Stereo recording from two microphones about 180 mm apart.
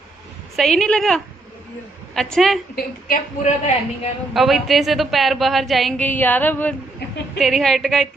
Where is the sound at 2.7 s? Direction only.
50° left (ahead or behind).